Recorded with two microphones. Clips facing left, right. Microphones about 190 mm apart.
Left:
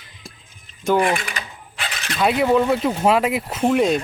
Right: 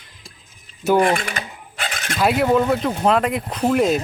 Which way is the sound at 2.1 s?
Centre (ahead or behind).